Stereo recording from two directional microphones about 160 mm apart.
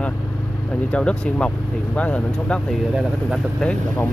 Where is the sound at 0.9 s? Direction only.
5° left (ahead or behind).